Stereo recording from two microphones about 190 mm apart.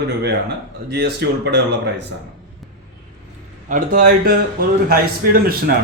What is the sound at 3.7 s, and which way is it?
A man's voice, 40° right (ahead or behind).